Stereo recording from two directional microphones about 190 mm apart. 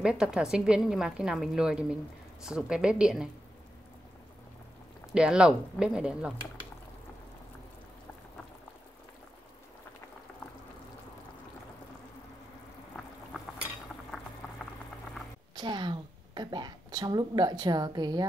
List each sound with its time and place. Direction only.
0.0 s a woman's voice: 5° right (ahead or behind)
5.1 s a woman's voice: 5° right (ahead or behind)
15.5 s a woman's voice: 25° right (ahead or behind)